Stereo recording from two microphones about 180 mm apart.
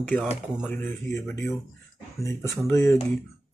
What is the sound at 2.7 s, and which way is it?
Speech, 15° left (ahead or behind).